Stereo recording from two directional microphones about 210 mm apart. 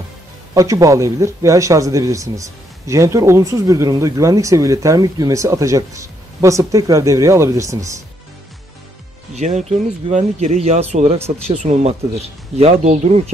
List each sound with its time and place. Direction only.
0.6 s speech: 15° right (ahead or behind)
9.3 s speech: 35° right (ahead or behind)